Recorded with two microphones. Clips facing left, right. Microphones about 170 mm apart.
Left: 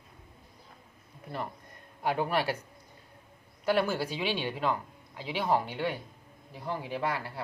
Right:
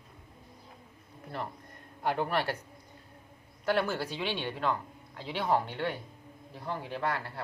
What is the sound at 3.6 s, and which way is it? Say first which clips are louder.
Speech: left 2 dB; 5° left (ahead or behind).